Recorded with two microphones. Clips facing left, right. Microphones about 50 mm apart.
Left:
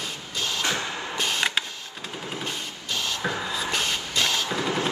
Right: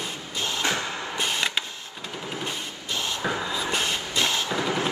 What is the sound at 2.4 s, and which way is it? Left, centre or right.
Printer, right.